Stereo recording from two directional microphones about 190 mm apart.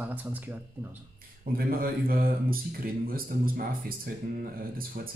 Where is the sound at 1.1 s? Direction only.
50° right (ahead or behind).